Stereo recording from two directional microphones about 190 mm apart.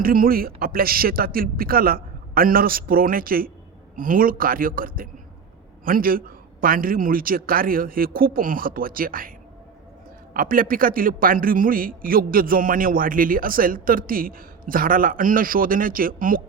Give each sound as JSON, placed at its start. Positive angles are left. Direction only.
{"t": 0.0, "sound": "a man's voice", "side_deg": -50}
{"t": 10.3, "sound": "a man's voice", "side_deg": -50}